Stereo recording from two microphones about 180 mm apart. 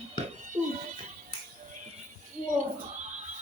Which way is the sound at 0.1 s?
40° right (ahead or behind).